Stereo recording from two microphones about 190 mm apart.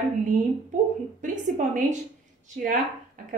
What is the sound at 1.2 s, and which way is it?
Speech, 40° right (ahead or behind).